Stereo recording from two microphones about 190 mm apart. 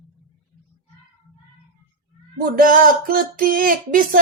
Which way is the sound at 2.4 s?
50° right (ahead or behind).